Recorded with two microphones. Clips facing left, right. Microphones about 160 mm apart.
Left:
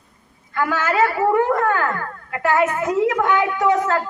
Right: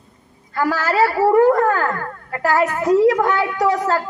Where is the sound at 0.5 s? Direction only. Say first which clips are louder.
Right 2 dB; 35° right (ahead or behind).